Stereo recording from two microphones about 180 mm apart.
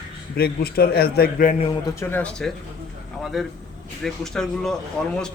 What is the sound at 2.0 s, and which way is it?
Speech, 10° left (ahead or behind).